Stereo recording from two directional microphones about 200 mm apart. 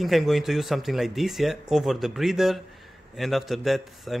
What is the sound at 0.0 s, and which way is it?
Speech, centre (ahead or behind).